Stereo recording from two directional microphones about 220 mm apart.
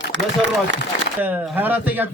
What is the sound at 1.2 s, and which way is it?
Speech, 5° right (ahead or behind).